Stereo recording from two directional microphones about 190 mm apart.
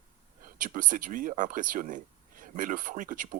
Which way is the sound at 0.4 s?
45° right (ahead or behind).